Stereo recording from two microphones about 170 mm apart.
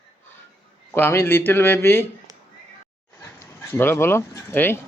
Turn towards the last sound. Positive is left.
turn(degrees=15)  # may be behind; listen again after turning